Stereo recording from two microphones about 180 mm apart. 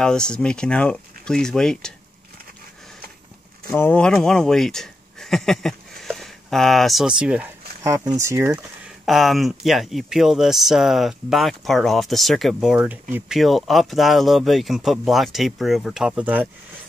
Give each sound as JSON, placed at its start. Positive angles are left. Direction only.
{"t": 0.0, "sound": "speech", "side_deg": 5}
{"t": 3.7, "sound": "speech", "side_deg": 10}
{"t": 7.8, "sound": "speech", "side_deg": -20}
{"t": 8.8, "sound": "speech", "side_deg": 0}